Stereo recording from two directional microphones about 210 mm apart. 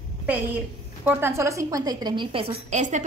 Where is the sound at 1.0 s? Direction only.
10° right (ahead or behind).